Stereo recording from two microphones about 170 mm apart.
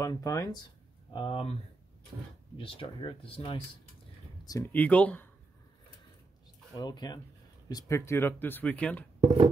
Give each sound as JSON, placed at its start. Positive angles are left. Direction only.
{"t": 0.0, "sound": "speech", "side_deg": 20}
{"t": 4.5, "sound": "speech", "side_deg": 15}
{"t": 6.7, "sound": "speech", "side_deg": 25}